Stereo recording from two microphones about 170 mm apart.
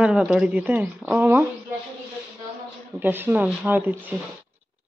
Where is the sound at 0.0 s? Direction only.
5° right (ahead or behind).